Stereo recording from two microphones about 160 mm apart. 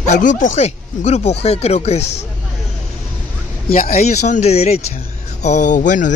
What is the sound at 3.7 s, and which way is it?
Speech, 60° left (ahead or behind).